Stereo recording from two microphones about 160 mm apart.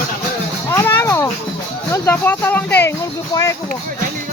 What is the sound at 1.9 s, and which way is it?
Speech, 15° left (ahead or behind).